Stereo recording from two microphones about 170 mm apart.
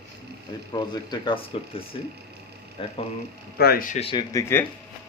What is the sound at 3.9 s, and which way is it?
Speech, 35° left (ahead or behind).